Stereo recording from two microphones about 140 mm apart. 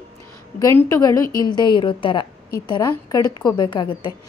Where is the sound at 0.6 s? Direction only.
20° left (ahead or behind); by 4.1 s 35° left (ahead or behind).